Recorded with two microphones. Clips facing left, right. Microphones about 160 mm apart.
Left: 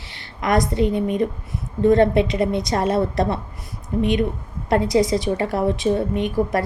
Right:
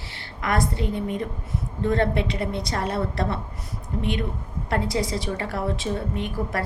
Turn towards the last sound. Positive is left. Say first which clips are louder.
# left 7 dB
turn(degrees=20)  # may be behind; listen again after turning